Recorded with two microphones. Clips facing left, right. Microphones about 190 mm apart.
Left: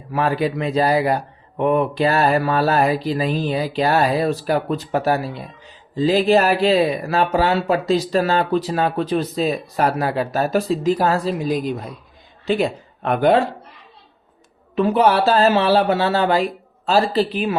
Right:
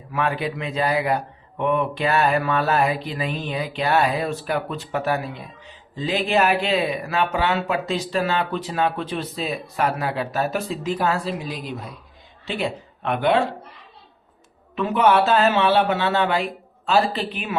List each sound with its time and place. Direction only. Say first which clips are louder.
0.1 s speech: left 5 dB; 35° left (ahead or behind)
14.8 s speech: left 2 dB; 35° left (ahead or behind)